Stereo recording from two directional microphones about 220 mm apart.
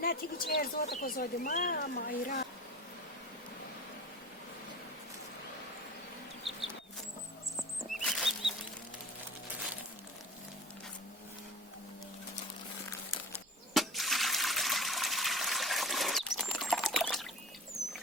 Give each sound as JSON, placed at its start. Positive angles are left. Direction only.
{"t": 0.0, "sound": "speech", "side_deg": 40}
{"t": 8.0, "sound": "bird flight", "side_deg": 0}
{"t": 13.7, "sound": "water", "side_deg": 0}